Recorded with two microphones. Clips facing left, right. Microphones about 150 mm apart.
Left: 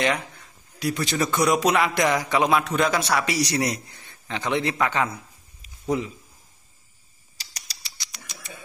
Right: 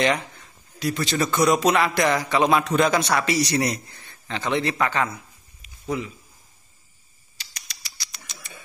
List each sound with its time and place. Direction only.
0.7 s a man's voice: 10° left (ahead or behind)
7.3 s rodents: 35° left (ahead or behind)
8.0 s a sound: 20° left (ahead or behind)